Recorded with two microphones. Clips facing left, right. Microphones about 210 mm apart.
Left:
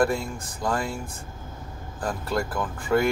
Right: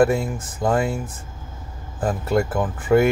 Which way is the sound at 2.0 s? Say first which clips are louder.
Right 7 dB; 20° right (ahead or behind).